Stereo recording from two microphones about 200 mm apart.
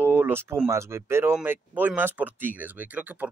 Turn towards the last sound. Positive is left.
turn(degrees=-10)  # may be behind; listen again after turning